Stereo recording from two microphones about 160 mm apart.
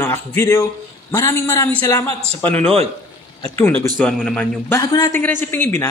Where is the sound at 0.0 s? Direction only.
15° left (ahead or behind).